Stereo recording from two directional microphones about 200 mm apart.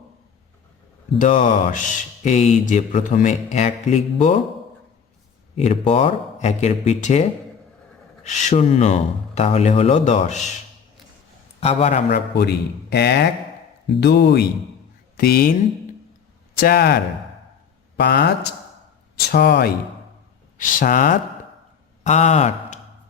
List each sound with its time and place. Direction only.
1.2 s speech: 40° left (ahead or behind)
5.5 s speech: 35° left (ahead or behind)
11.6 s speech: 30° left (ahead or behind)
12.0 s speech: 55° left (ahead or behind)
16.6 s speech: 50° left (ahead or behind)
19.3 s speech: 55° left (ahead or behind)
20.6 s speech: 45° left (ahead or behind)